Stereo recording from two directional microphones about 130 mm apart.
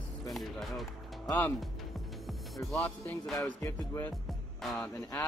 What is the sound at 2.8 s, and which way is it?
Music, 20° left (ahead or behind).